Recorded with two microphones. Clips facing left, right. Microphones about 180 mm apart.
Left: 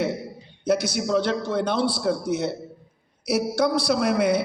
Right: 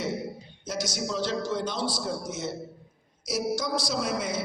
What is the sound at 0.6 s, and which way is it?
Music, 60° left (ahead or behind).